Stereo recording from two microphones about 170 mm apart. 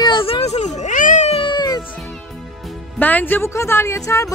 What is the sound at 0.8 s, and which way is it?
Cat, 50° left (ahead or behind).